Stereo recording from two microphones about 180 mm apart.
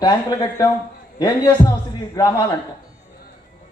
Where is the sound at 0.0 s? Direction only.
20° left (ahead or behind).